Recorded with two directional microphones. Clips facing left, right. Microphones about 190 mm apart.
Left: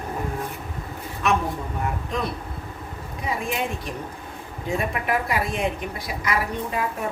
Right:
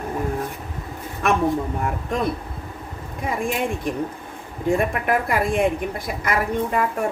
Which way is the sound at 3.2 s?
50° right (ahead or behind).